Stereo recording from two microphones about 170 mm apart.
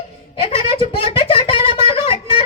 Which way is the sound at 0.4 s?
30° left (ahead or behind).